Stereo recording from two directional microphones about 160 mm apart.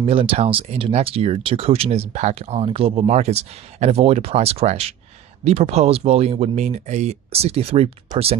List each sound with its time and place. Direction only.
0.0 s speech: 35° right (ahead or behind)